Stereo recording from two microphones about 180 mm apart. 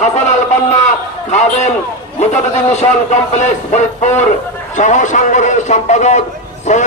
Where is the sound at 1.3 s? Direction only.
40° left (ahead or behind).